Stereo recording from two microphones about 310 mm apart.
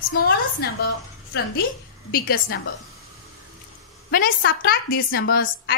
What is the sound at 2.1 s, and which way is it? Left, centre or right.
Speech, left.